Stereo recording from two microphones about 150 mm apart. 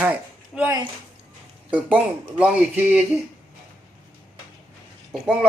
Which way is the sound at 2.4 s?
10° right (ahead or behind).